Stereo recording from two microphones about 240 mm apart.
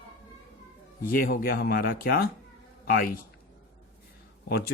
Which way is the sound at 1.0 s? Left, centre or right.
Left.